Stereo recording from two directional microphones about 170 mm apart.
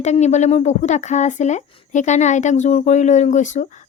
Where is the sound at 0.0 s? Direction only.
40° left (ahead or behind).